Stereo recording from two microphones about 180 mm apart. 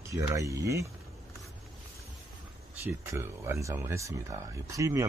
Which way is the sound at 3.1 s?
15° right (ahead or behind).